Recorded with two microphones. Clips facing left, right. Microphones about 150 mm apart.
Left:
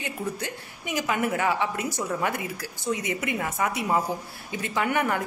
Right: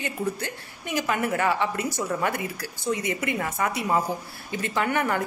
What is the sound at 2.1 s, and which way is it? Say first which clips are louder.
Speech: right 1 dB; centre (ahead or behind).